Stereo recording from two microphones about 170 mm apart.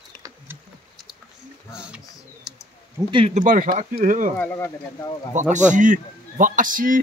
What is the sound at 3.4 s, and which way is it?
Speech, 50° right (ahead or behind).